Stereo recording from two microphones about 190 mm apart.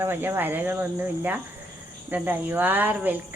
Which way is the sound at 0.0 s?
10° right (ahead or behind).